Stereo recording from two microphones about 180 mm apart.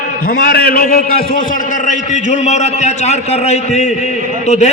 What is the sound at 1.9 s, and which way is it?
A man's voice, 40° left (ahead or behind).